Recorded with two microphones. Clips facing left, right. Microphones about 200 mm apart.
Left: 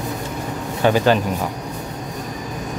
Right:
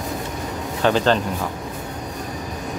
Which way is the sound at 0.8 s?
10° left (ahead or behind).